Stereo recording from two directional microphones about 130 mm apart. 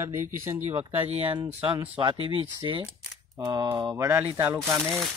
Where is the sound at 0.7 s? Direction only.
50° right (ahead or behind); by 3.6 s 30° right (ahead or behind).